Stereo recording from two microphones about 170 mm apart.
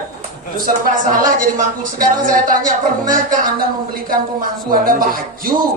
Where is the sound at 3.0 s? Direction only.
55° right (ahead or behind).